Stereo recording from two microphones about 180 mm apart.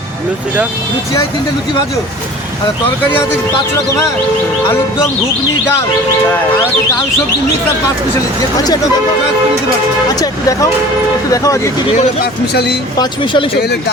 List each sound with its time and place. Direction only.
11.3 s speech: 20° left (ahead or behind)
12.2 s speech: 65° left (ahead or behind)
13.0 s speech: 25° left (ahead or behind)